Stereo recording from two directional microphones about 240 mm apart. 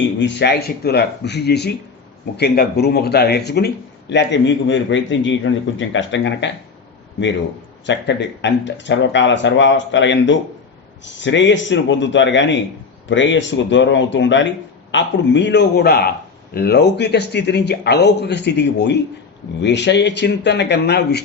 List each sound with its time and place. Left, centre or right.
0.2 s speech: left
7.9 s speech: left